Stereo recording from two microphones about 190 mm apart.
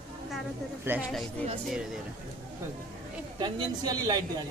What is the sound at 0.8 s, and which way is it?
Speech, 10° right (ahead or behind).